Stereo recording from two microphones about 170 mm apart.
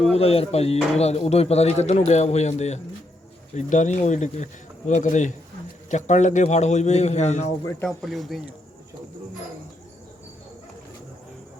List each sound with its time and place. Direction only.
0.1 s a man's voice: 35° left (ahead or behind)
7.9 s speech: centre (ahead or behind)